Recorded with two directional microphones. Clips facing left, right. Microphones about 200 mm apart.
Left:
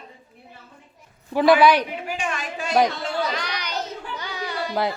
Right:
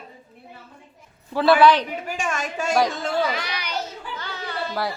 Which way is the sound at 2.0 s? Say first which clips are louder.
Right 1 dB; 45° right (ahead or behind).